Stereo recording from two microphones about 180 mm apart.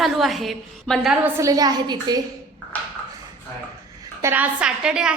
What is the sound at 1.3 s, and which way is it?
Speech, 20° right (ahead or behind).